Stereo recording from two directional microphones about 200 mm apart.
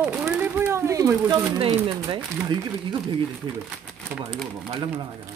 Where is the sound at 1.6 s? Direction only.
20° right (ahead or behind).